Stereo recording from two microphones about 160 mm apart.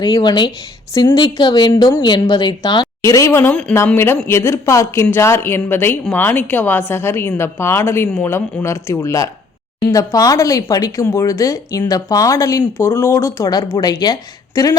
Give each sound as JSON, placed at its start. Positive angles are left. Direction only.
{"t": 0.0, "sound": "a woman's voice", "side_deg": 25}